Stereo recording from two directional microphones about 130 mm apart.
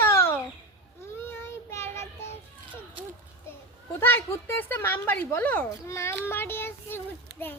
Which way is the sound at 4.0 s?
15° left (ahead or behind).